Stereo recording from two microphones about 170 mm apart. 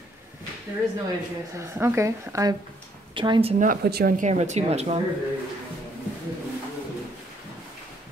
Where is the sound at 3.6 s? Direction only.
60° right (ahead or behind); by 5.0 s 40° right (ahead or behind).